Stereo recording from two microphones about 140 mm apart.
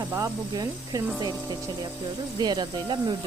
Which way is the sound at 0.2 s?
25° right (ahead or behind).